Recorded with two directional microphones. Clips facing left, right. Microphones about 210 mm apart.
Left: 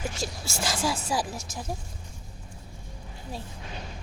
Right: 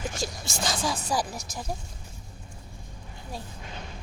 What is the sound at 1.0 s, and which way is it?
Speech, 5° left (ahead or behind).